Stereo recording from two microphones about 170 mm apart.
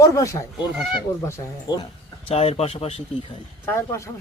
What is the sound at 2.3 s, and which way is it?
Speech, 35° left (ahead or behind).